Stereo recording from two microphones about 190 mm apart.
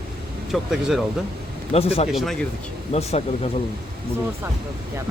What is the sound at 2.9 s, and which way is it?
Speech, 35° left (ahead or behind).